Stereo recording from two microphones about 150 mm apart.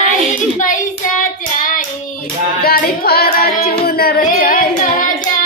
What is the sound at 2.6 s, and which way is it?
Child singing, 80° left.